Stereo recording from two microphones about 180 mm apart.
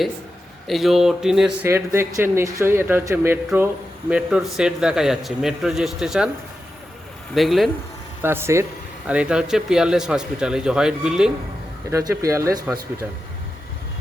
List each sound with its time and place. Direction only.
0.7 s a man's voice: centre (ahead or behind)
1.6 s a man's voice: 15° right (ahead or behind)
7.3 s a man's voice: centre (ahead or behind)
8.2 s a man's voice: 15° right (ahead or behind)
11.9 s speech: 15° right (ahead or behind)